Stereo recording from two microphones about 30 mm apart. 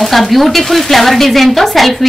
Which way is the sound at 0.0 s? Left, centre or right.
Centre.